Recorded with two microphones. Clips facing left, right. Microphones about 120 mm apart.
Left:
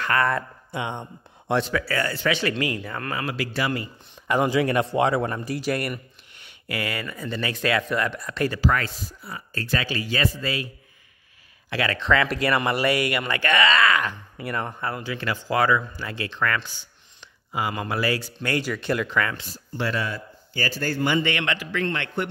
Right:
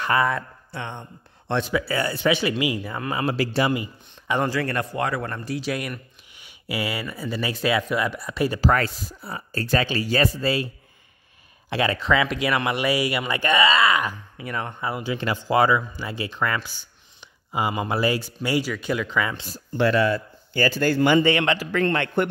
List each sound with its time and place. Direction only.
0.0 s speech: 15° right (ahead or behind)
0.7 s a man's voice: 15° left (ahead or behind)
1.7 s speech: 15° right (ahead or behind)
3.2 s speech: 30° right (ahead or behind)
4.5 s a man's voice: 15° left (ahead or behind); by 8.5 s 10° right (ahead or behind)
8.5 s speech: 40° right (ahead or behind)
11.7 s speech: 20° right (ahead or behind)
12.0 s speech: 5° right (ahead or behind)
14.3 s speech: centre (ahead or behind)
17.2 s a sound: 20° right (ahead or behind)
17.9 s speech: 20° right (ahead or behind); by 19.2 s centre (ahead or behind)
19.8 s speech: 70° right (ahead or behind)
21.2 s speech: 30° right (ahead or behind)
21.8 s speech: 50° right (ahead or behind)